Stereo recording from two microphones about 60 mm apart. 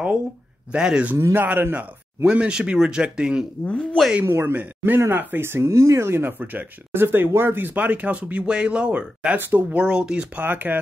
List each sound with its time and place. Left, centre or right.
0.7 s speech: centre
1.3 s speech: right
2.2 s speech: centre
3.6 s speech: centre
4.2 s speech: right; by 9.4 s centre
9.4 s speech: right
9.8 s speech: centre
10.4 s speech: right